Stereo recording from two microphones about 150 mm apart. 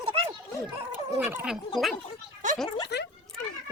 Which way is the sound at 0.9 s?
15° right (ahead or behind).